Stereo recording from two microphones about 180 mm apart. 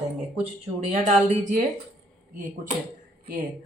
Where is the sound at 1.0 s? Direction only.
40° right (ahead or behind).